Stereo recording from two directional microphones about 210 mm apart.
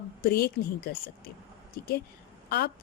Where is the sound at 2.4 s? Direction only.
50° left (ahead or behind).